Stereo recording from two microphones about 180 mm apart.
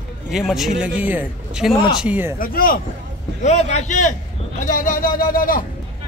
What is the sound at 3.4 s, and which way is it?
Speech, 40° left (ahead or behind).